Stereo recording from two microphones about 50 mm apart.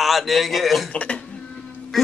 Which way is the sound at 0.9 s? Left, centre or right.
Left.